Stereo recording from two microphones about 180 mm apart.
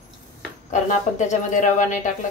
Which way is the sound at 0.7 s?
40° left (ahead or behind).